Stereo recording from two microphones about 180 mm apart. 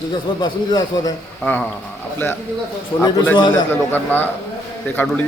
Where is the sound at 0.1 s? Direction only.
25° left (ahead or behind).